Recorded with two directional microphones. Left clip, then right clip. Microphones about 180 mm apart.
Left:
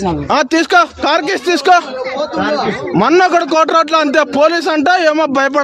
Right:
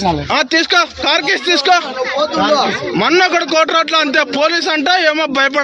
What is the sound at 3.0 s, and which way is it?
A man's voice, 50° left (ahead or behind).